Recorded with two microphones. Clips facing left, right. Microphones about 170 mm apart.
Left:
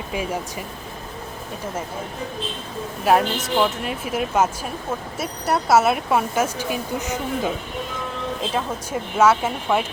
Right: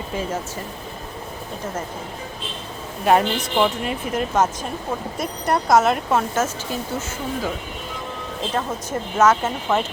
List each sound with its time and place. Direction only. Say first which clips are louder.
0.1 s speech: left 1 dB; 10° left (ahead or behind)
3.0 s speech: right 1 dB; centre (ahead or behind)